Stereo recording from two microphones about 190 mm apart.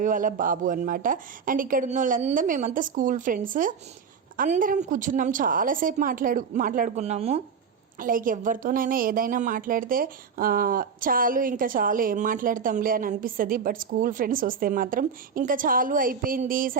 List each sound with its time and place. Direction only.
0.0 s a woman's voice: 45° right (ahead or behind)
7.9 s a woman's voice: 45° right (ahead or behind)